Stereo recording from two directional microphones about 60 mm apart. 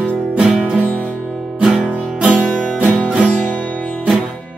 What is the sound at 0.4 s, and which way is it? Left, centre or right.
Music, centre.